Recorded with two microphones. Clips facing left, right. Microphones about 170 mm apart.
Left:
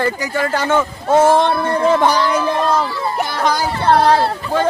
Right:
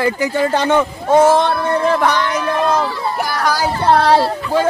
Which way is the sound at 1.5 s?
Centre (ahead or behind).